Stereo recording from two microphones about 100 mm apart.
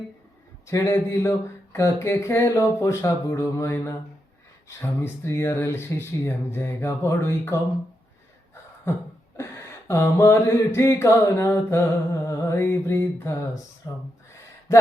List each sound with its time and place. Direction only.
0.7 s speech: 30° left (ahead or behind)
9.4 s speech: 30° left (ahead or behind)
12.2 s a sound: 25° left (ahead or behind)